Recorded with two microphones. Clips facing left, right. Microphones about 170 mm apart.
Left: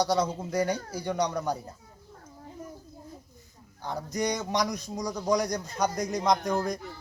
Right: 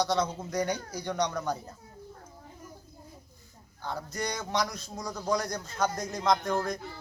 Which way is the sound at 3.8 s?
15° left (ahead or behind).